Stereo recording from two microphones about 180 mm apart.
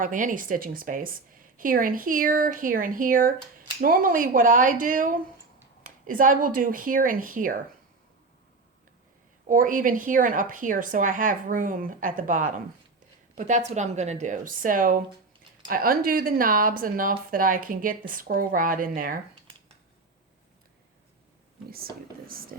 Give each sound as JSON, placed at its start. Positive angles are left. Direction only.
{"t": 0.0, "sound": "a woman's voice", "side_deg": -45}
{"t": 9.5, "sound": "a woman's voice", "side_deg": -50}
{"t": 13.7, "sound": "a woman's voice", "side_deg": -40}
{"t": 21.7, "sound": "speech", "side_deg": -55}